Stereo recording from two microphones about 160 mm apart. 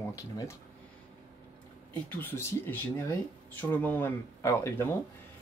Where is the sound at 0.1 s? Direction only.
20° left (ahead or behind).